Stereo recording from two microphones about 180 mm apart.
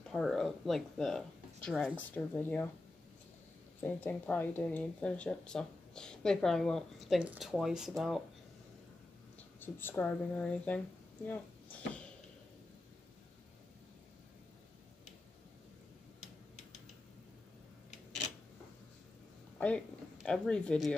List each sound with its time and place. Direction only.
0.1 s speech: centre (ahead or behind)
3.8 s speech: 5° left (ahead or behind)
9.6 s speech: 10° left (ahead or behind)
11.2 s a sound: 10° left (ahead or behind)
20.2 s speech: 5° left (ahead or behind)